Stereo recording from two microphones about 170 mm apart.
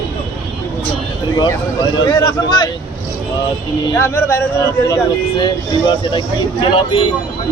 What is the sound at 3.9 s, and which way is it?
Speech, 15° left (ahead or behind).